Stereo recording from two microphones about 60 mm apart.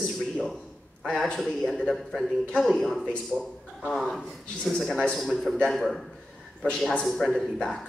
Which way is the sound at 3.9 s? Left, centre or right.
Centre.